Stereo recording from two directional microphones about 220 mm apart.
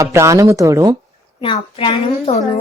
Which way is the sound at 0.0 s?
15° right (ahead or behind).